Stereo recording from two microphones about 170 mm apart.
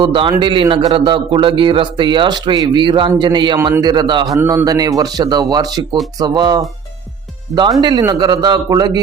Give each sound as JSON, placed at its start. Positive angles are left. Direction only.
{"t": 0.0, "sound": "a man's voice", "side_deg": -30}